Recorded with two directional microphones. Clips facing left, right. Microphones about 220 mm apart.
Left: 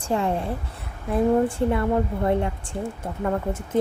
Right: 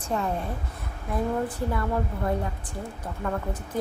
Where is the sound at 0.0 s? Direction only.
30° left (ahead or behind).